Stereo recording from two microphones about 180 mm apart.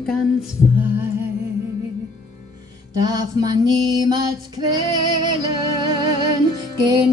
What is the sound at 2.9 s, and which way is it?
Music, 20° right (ahead or behind).